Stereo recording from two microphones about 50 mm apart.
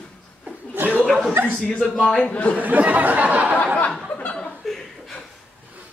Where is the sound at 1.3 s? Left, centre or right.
Right.